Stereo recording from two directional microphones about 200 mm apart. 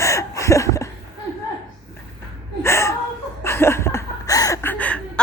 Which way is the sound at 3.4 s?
10° left (ahead or behind).